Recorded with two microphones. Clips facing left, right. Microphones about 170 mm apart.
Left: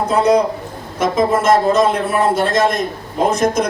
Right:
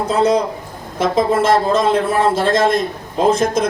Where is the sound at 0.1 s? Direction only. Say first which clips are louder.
Left 2 dB; 30° right (ahead or behind).